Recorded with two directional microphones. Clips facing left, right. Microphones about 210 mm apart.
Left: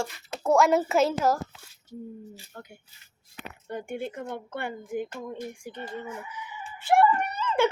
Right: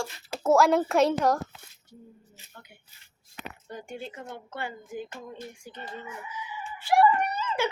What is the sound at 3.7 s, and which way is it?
Speech, 55° left (ahead or behind).